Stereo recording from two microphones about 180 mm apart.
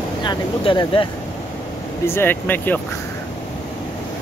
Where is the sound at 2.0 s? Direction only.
10° left (ahead or behind).